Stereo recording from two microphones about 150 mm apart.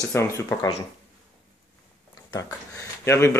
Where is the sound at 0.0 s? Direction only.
20° left (ahead or behind).